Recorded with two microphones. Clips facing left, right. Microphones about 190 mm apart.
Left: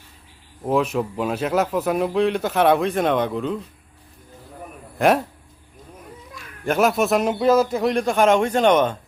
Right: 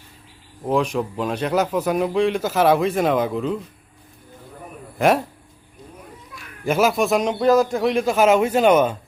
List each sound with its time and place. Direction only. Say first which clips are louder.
0.6 s a man's voice: even; 5° left (ahead or behind)
4.9 s speech: even; centre (ahead or behind)
6.7 s a man's voice: even; centre (ahead or behind)